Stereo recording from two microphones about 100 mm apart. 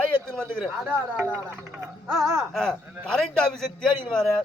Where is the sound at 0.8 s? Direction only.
15° right (ahead or behind).